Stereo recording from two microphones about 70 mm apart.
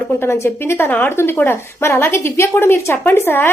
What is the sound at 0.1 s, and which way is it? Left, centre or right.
A woman's voice, left.